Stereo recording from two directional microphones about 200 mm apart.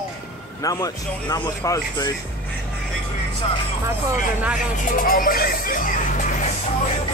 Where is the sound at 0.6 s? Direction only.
15° left (ahead or behind).